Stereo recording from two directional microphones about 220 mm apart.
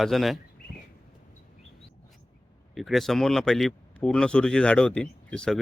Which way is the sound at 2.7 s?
Centre (ahead or behind).